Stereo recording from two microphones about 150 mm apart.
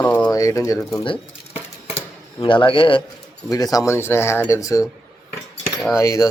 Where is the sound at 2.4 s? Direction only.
35° left (ahead or behind).